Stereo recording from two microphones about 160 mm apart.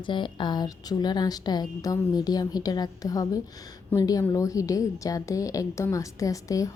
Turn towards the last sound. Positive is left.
turn(degrees=20)  # may be behind; listen again after turning